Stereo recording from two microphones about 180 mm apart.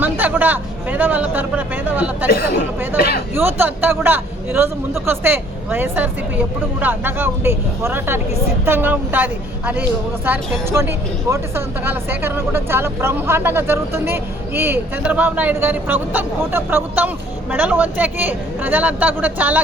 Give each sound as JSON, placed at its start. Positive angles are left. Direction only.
{"t": 0.0, "sound": "speech", "side_deg": -10}
{"t": 2.3, "sound": "speech", "side_deg": 60}
{"t": 3.3, "sound": "speech", "side_deg": -10}